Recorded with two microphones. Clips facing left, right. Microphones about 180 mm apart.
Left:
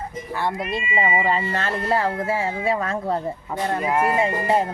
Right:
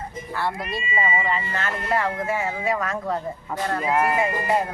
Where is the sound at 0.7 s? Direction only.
20° left (ahead or behind).